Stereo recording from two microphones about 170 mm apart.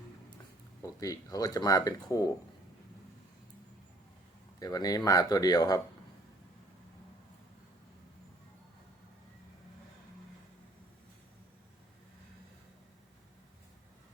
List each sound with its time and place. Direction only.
0.8 s speech: 20° left (ahead or behind)
4.6 s speech: 20° left (ahead or behind)